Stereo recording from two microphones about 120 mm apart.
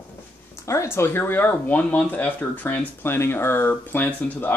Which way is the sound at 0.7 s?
25° left (ahead or behind).